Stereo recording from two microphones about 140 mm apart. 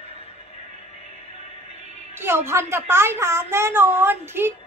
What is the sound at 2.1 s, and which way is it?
A woman's voice, 15° right (ahead or behind).